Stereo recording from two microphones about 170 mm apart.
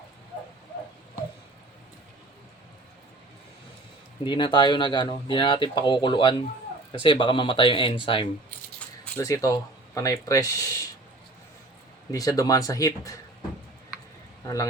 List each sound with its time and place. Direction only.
4.2 s speech: 30° left (ahead or behind)
12.1 s speech: 20° left (ahead or behind)
14.4 s speech: 20° left (ahead or behind)